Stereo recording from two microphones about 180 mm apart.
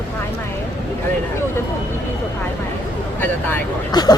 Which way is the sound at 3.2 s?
10° left (ahead or behind).